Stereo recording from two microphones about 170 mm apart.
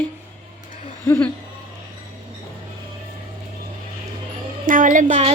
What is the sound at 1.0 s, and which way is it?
Speech, 15° left (ahead or behind).